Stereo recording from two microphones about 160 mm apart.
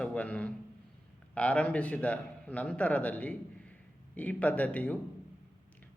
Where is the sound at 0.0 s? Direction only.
5° left (ahead or behind).